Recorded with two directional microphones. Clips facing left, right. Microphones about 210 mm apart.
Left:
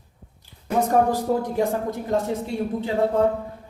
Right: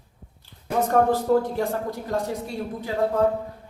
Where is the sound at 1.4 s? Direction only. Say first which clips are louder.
Left 2 dB; 20° left (ahead or behind).